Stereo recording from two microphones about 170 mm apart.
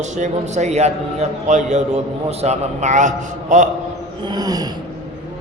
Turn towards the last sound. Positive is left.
turn(degrees=-20)  # may be behind; listen again after turning